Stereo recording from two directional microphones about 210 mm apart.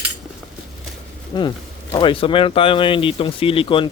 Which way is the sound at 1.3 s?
20° left (ahead or behind).